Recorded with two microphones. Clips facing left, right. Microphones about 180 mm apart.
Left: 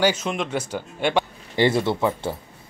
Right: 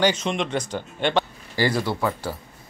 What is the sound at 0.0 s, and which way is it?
Speech, 5° left (ahead or behind).